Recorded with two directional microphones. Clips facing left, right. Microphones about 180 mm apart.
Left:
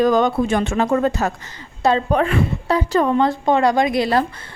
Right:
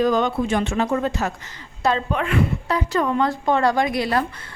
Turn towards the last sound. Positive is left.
turn(degrees=25)  # may be behind; listen again after turning